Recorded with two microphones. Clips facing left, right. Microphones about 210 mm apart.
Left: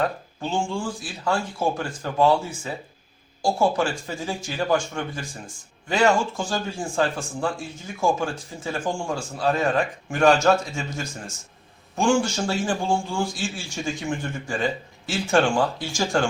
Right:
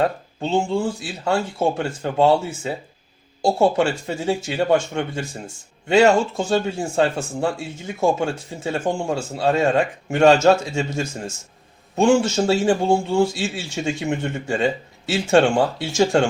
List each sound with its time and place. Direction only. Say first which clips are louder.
0.0 s a man's voice: right 4 dB; 25° right (ahead or behind)